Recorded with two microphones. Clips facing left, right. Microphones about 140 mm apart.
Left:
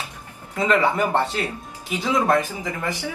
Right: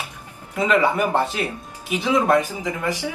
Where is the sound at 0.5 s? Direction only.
10° right (ahead or behind).